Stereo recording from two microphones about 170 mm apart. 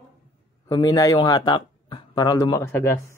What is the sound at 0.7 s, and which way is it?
Speech, 20° left (ahead or behind).